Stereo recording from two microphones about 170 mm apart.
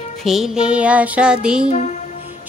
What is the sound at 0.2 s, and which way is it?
Music, centre (ahead or behind).